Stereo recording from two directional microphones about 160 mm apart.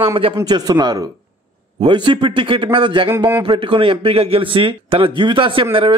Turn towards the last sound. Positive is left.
turn(degrees=-35)  # may be behind; listen again after turning